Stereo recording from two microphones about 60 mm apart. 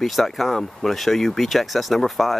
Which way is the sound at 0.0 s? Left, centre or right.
Centre.